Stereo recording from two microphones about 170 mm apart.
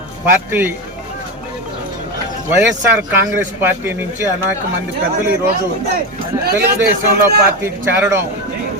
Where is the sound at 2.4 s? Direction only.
15° right (ahead or behind).